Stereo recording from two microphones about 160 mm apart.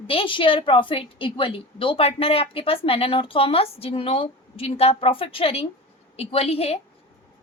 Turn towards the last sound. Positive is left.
turn(degrees=40)  # may be behind; listen again after turning